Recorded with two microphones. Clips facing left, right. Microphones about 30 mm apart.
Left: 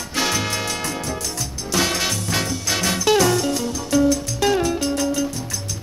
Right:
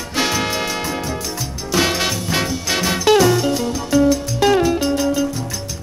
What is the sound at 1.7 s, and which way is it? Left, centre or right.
Music, centre.